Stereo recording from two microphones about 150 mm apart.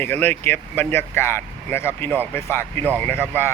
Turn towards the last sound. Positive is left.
turn(degrees=15)  # may be behind; listen again after turning